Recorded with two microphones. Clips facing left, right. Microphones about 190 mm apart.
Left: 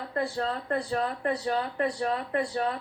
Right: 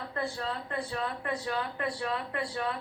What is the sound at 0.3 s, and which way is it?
Speech, 40° left (ahead or behind).